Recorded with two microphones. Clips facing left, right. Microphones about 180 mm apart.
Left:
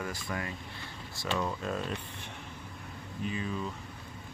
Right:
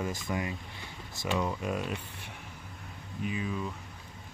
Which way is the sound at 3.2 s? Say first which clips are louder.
Right 1 dB; 5° right (ahead or behind).